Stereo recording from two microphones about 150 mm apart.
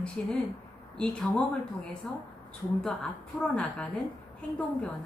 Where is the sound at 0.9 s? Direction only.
5° left (ahead or behind).